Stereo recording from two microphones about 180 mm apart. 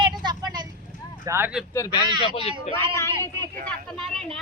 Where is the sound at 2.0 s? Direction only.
25° right (ahead or behind).